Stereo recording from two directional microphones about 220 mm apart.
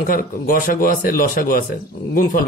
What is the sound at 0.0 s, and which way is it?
Speech, 40° left (ahead or behind).